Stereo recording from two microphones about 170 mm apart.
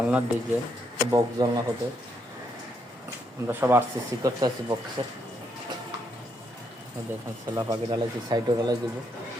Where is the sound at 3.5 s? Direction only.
10° right (ahead or behind).